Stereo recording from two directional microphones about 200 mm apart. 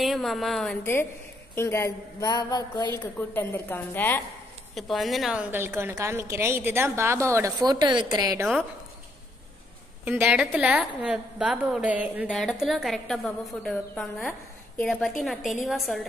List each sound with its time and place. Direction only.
0.0 s a woman's voice: centre (ahead or behind)
1.5 s a woman's voice: 15° left (ahead or behind)
3.2 s a woman's voice: 10° left (ahead or behind); by 8.5 s 20° right (ahead or behind)
10.0 s a woman's voice: 5° right (ahead or behind)